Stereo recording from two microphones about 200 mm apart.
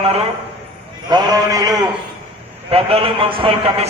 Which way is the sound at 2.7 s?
30° right (ahead or behind).